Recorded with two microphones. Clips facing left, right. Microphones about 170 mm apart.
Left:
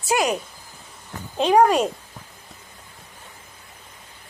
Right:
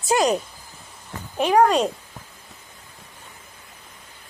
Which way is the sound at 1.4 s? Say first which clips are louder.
Left 1 dB; 15° left (ahead or behind).